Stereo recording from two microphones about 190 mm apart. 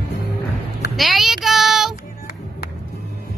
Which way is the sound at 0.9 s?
Centre (ahead or behind).